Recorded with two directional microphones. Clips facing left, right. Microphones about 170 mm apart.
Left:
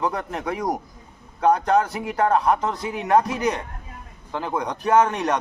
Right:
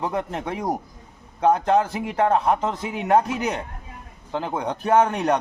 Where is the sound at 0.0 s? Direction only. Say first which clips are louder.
Even; 30° right (ahead or behind).